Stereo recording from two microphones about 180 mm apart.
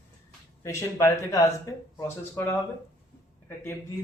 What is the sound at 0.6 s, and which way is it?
A man's voice, 15° left (ahead or behind).